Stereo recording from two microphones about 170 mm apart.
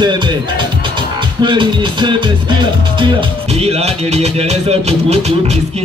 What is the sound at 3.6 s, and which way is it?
Music, 40° right (ahead or behind).